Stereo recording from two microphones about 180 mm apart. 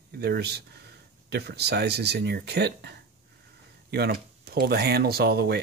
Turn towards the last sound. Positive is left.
turn(degrees=-60)  # may be behind; listen again after turning